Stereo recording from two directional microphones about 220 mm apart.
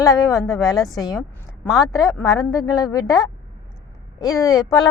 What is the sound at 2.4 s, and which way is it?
A woman's voice, 15° left (ahead or behind).